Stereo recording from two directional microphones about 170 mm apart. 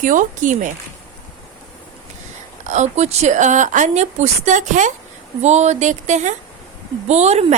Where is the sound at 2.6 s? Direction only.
45° right (ahead or behind).